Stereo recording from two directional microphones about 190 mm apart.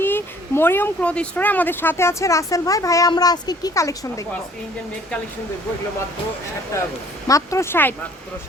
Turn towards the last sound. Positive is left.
turn(degrees=10)  # may be behind; listen again after turning